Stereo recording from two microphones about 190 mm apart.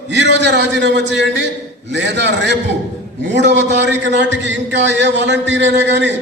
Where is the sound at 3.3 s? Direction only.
65° right (ahead or behind).